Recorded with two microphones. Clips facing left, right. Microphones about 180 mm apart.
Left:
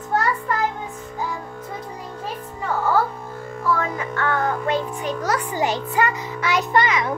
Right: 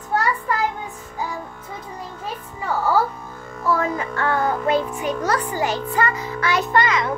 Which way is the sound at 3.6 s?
30° right (ahead or behind).